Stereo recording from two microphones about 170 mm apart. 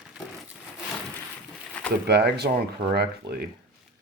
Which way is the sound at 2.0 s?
75° right (ahead or behind).